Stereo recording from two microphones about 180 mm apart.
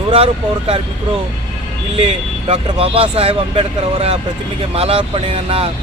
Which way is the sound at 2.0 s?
35° right (ahead or behind).